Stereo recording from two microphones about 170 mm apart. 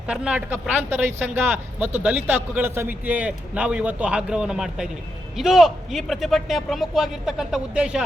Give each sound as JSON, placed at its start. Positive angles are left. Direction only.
{"t": 0.1, "sound": "a man's voice", "side_deg": -5}